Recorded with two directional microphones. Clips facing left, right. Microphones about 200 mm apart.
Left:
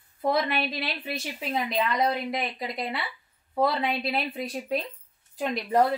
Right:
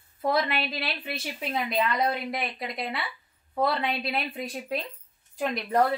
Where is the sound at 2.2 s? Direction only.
Centre (ahead or behind).